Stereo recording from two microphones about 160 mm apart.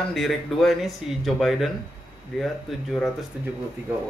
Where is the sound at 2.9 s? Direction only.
Centre (ahead or behind).